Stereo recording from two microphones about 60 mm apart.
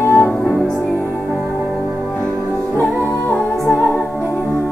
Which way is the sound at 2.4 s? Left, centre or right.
Left.